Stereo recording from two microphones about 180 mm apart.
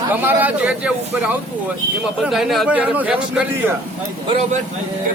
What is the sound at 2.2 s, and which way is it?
A man's voice, centre (ahead or behind).